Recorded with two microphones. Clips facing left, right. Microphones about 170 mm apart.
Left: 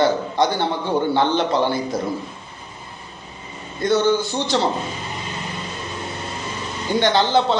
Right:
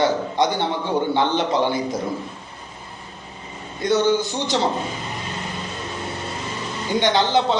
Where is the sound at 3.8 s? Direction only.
20° right (ahead or behind).